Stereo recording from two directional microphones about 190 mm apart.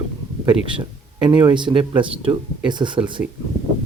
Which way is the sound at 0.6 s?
25° right (ahead or behind).